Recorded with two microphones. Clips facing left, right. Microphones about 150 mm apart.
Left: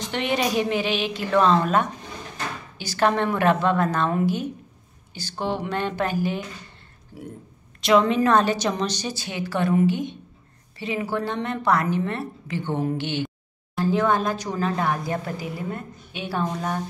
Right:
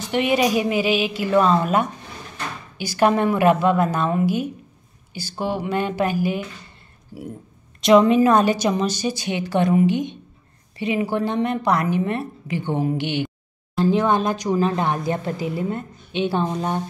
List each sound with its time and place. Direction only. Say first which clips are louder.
0.1 s a woman's voice: right 5 dB; 10° right (ahead or behind)